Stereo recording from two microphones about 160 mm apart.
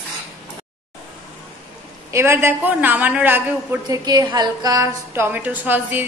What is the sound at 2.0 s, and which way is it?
A woman's voice, 15° right (ahead or behind).